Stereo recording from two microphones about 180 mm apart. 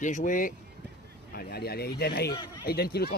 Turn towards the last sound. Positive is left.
turn(degrees=60)  # may be behind; listen again after turning